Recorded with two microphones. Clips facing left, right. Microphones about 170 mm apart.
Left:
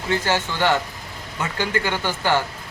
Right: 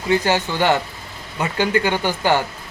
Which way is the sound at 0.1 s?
15° right (ahead or behind).